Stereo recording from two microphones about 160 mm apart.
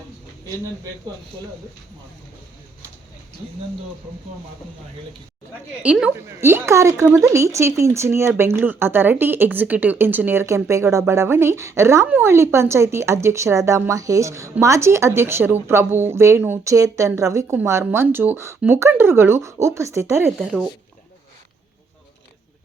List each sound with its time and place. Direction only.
5.8 s a woman's voice: 5° right (ahead or behind)
20.4 s speech: centre (ahead or behind)